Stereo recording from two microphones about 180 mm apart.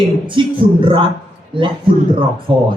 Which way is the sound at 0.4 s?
25° right (ahead or behind).